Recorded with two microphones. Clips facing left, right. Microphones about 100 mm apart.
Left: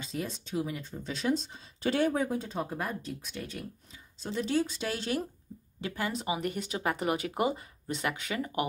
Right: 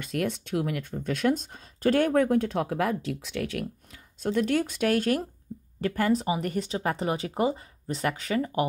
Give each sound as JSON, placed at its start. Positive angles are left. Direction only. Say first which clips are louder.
{"t": 0.0, "sound": "speech", "louder": "right 7 dB", "side_deg": -65}